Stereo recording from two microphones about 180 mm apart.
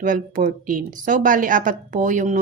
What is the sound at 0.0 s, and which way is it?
A woman's voice, 45° right (ahead or behind).